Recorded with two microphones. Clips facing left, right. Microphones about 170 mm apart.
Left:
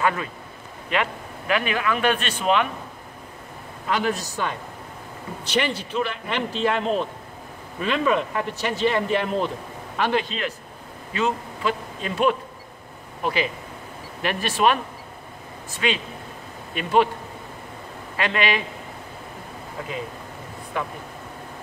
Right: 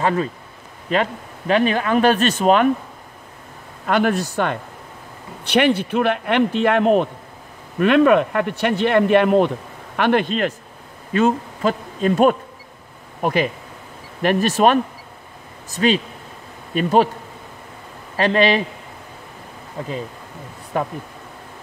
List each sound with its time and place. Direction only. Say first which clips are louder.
0.0 s speech: right 4 dB; 35° right (ahead or behind)
3.8 s speech: right 6 dB; 55° right (ahead or behind); by 17.1 s 40° right (ahead or behind)
18.1 s speech: right 7 dB; 35° right (ahead or behind)
20.7 s speech: right 6 dB; 40° right (ahead or behind)